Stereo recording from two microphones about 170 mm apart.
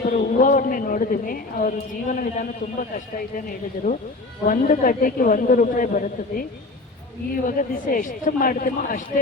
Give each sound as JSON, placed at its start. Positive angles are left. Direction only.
{"t": 0.0, "sound": "a woman's voice", "side_deg": 50}
{"t": 7.4, "sound": "a woman's voice", "side_deg": 50}